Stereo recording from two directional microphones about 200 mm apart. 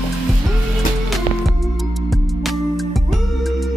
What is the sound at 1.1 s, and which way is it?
Music, centre (ahead or behind).